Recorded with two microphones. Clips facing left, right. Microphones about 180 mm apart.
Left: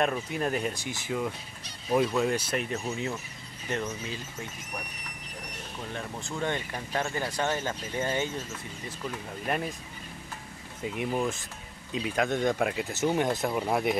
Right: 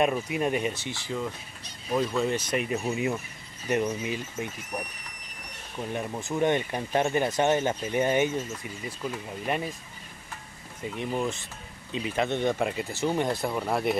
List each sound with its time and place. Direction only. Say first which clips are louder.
0.0 s speech: right 3 dB; 5° right (ahead or behind)
1.0 s speech: left 2 dB; 15° left (ahead or behind)
2.5 s speech: right 3 dB; 5° right (ahead or behind)
5.9 s speech: right 7 dB; 20° right (ahead or behind)
9.0 s speech: right 3 dB; 5° right (ahead or behind)
11.0 s speech: even; 5° left (ahead or behind)